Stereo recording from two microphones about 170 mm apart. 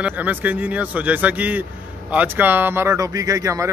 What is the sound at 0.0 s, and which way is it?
A man's voice, 10° right (ahead or behind).